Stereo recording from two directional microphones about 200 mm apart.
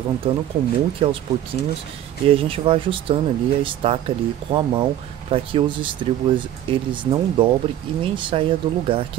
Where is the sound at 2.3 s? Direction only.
30° right (ahead or behind).